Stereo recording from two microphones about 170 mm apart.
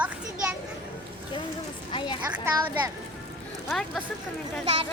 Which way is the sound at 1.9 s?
30° left (ahead or behind).